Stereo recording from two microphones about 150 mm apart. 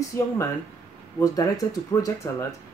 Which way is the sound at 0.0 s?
20° left (ahead or behind).